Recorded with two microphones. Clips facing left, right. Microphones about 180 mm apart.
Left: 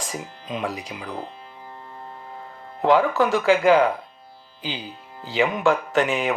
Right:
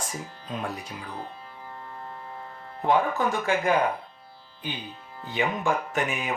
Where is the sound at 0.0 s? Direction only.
90° left.